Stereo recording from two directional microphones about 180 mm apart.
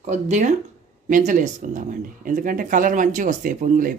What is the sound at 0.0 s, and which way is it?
Speech, 40° right (ahead or behind).